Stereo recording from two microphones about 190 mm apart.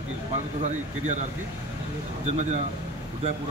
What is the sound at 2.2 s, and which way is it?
Speech, 40° right (ahead or behind).